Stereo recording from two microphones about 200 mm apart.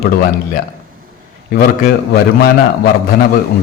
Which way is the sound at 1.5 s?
45° left (ahead or behind).